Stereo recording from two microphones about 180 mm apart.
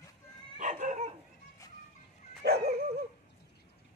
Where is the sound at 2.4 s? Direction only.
65° right (ahead or behind).